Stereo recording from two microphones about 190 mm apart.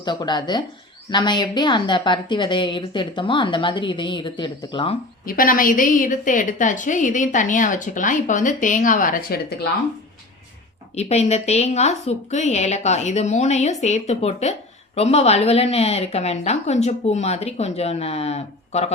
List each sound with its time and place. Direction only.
0.0 s a woman's voice: 25° left (ahead or behind)
5.2 s a woman's voice: 50° left (ahead or behind)
10.9 s speech: 35° left (ahead or behind)